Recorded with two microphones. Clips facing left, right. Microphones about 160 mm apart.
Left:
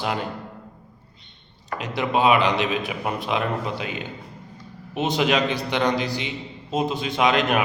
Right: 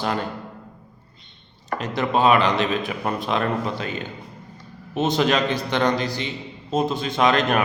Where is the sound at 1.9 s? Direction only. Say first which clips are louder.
Right 1 dB; 10° left (ahead or behind).